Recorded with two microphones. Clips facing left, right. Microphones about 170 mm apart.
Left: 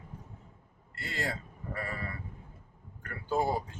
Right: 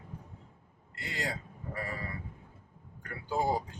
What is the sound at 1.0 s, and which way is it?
Speech, 15° right (ahead or behind).